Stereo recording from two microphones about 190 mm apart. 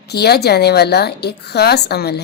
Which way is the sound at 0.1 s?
60° left (ahead or behind).